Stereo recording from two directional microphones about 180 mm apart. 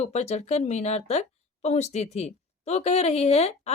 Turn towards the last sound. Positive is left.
turn(degrees=35)  # may be behind; listen again after turning